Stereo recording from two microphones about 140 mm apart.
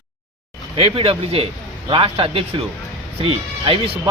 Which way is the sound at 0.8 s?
45° right (ahead or behind).